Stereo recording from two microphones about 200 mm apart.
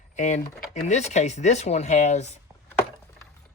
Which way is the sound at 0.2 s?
35° left (ahead or behind).